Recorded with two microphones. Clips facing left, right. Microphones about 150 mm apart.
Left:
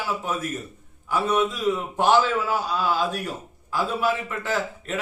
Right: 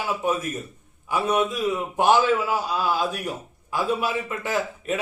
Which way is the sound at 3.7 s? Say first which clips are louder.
Even; 15° right (ahead or behind).